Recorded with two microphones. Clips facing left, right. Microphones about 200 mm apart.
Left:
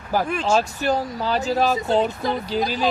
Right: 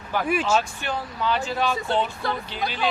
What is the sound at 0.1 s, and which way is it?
Speech, 40° left (ahead or behind).